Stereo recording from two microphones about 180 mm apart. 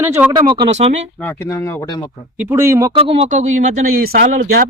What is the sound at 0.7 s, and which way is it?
Speech, 40° right (ahead or behind).